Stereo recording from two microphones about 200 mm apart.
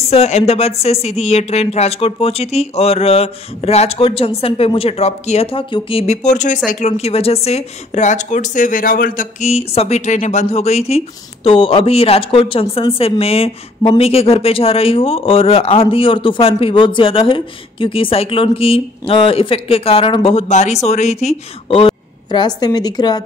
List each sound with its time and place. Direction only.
0.1 s a woman's voice: 30° left (ahead or behind)